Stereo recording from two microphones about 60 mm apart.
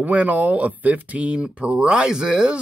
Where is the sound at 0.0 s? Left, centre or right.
Right.